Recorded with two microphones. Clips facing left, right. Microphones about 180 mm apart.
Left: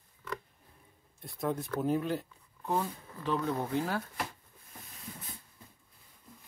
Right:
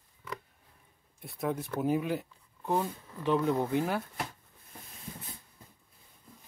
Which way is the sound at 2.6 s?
20° right (ahead or behind).